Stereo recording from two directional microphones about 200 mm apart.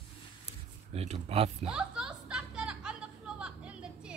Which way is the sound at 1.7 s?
5° right (ahead or behind).